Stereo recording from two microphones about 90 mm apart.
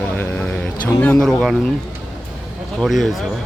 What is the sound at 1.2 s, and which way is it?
Speech, 5° left (ahead or behind).